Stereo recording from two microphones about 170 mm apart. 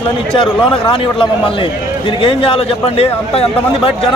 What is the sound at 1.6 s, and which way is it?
A man's voice, 30° left (ahead or behind).